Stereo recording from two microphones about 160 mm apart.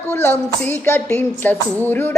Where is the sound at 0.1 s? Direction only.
15° left (ahead or behind).